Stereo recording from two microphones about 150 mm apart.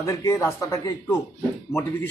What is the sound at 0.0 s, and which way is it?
Speech, 20° left (ahead or behind).